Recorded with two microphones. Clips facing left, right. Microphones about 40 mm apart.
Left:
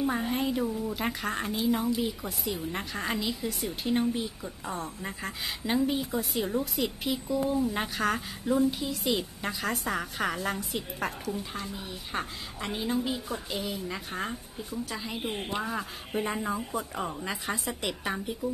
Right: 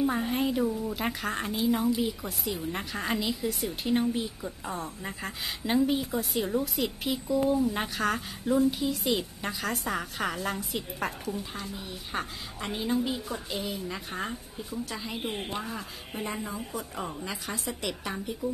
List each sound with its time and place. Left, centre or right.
0.0 s a woman's voice: centre